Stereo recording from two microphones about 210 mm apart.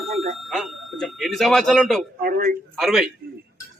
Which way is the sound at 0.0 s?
Centre (ahead or behind).